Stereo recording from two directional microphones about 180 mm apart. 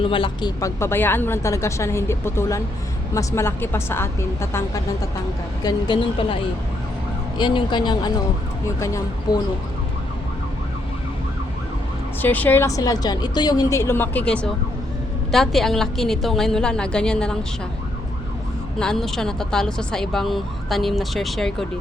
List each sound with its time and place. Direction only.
0.0 s speech: 30° left (ahead or behind)
5.6 s speech: 30° left (ahead or behind)
12.2 s a woman's voice: 10° left (ahead or behind)
18.8 s a woman's voice: centre (ahead or behind)